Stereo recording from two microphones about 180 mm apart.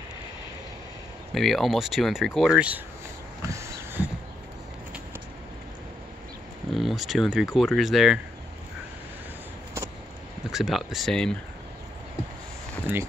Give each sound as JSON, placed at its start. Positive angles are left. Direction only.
{"t": 1.3, "sound": "speech", "side_deg": 0}
{"t": 3.4, "sound": "a sound", "side_deg": -15}
{"t": 6.7, "sound": "speech", "side_deg": 0}
{"t": 10.5, "sound": "speech", "side_deg": 0}